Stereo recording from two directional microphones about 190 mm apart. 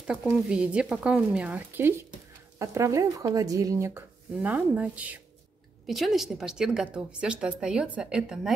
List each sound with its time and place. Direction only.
0.0 s a woman's voice: 5° right (ahead or behind)